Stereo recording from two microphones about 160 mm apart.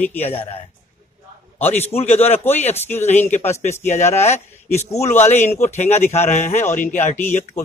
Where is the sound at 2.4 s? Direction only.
15° left (ahead or behind).